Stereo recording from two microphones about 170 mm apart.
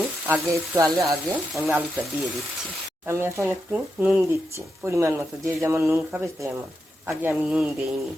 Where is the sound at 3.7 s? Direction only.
5° right (ahead or behind).